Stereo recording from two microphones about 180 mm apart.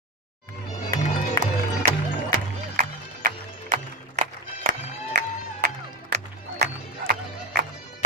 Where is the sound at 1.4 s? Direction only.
45° right (ahead or behind).